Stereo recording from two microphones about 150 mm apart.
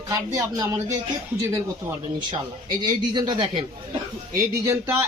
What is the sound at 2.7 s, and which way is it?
A man's voice, 30° right (ahead or behind).